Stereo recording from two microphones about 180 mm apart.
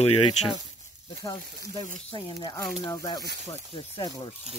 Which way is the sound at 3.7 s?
30° left (ahead or behind).